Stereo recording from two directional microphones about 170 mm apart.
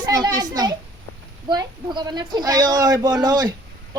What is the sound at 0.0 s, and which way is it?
A child's voice, 25° right (ahead or behind).